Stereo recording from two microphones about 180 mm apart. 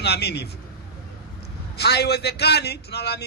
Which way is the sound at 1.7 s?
65° left (ahead or behind).